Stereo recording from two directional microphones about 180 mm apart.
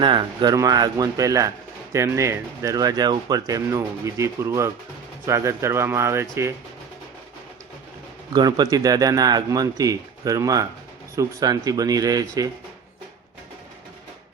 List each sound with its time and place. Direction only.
0.0 s speech: 25° right (ahead or behind)
8.3 s speech: 25° right (ahead or behind)